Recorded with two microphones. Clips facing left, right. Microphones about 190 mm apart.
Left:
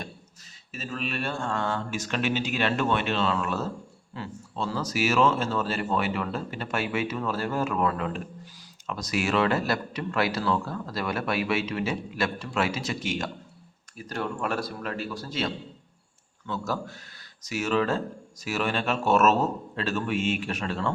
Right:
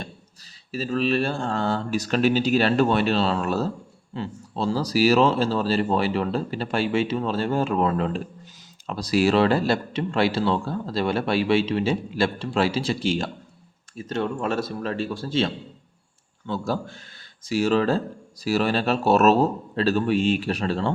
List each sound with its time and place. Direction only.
0.7 s speech: 35° right (ahead or behind)